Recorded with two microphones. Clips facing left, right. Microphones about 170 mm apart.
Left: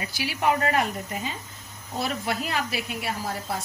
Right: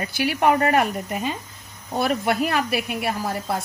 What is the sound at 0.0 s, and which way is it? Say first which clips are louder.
Speech: right 6 dB; 55° right (ahead or behind).